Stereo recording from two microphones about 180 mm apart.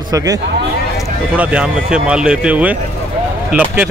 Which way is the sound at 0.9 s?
5° right (ahead or behind).